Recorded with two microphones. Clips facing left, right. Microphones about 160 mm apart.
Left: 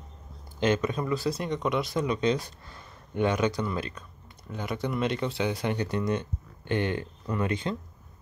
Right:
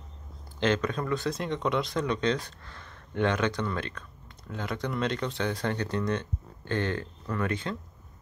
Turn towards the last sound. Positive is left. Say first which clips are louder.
# left 2 dB
turn(degrees=20)  # may be behind; listen again after turning